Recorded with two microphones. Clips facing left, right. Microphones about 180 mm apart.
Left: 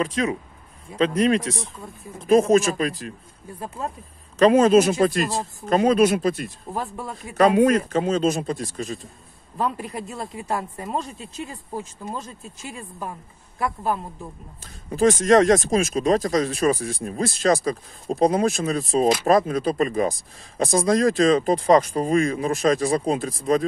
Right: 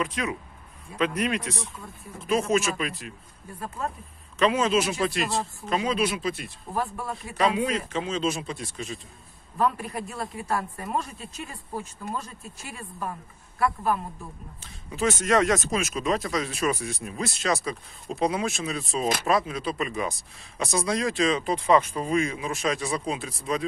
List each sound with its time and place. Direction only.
0.0 s speech: 35° left (ahead or behind)
3.5 s speech: 20° left (ahead or behind)
4.4 s speech: 45° left (ahead or behind)
6.7 s speech: 20° left (ahead or behind)
7.3 s speech: 50° left (ahead or behind)
9.6 s speech: 25° left (ahead or behind)
14.9 s speech: 35° left (ahead or behind)